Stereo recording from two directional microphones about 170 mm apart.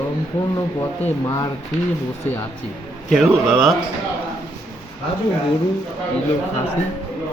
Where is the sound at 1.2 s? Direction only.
20° left (ahead or behind).